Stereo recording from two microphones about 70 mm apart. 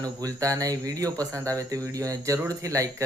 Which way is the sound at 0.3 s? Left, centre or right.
Right.